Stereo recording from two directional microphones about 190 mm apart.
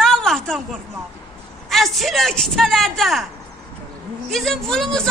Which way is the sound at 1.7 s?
Centre (ahead or behind).